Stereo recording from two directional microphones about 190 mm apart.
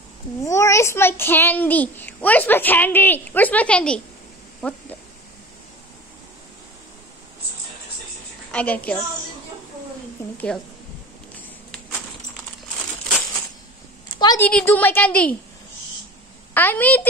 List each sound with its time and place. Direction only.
0.4 s a child's voice: 15° left (ahead or behind)
4.6 s a sound: 5° left (ahead or behind)
8.5 s a woman's voice: 5° left (ahead or behind)
10.3 s a woman's voice: 5° left (ahead or behind)
14.1 s a sound: 20° left (ahead or behind)
14.4 s a child's voice: 10° left (ahead or behind)
16.5 s a child's voice: 10° left (ahead or behind)